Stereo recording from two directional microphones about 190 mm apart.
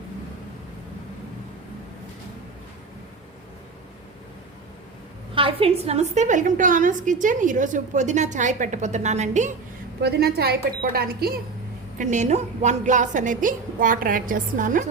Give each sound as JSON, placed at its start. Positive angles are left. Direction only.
{"t": 5.3, "sound": "a woman's voice", "side_deg": -30}
{"t": 10.0, "sound": "speech", "side_deg": -55}
{"t": 11.9, "sound": "a woman's voice", "side_deg": -40}